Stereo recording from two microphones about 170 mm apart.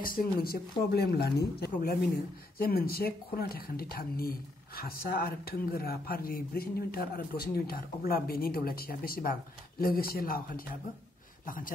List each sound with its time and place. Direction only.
0.0 s speech: 55° left (ahead or behind)